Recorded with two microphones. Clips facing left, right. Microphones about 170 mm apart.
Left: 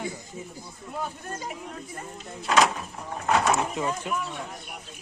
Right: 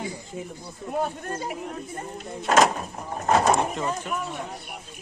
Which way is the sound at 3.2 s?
40° right (ahead or behind).